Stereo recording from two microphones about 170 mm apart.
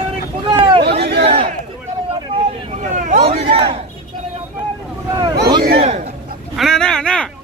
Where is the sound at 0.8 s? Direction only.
75° right (ahead or behind).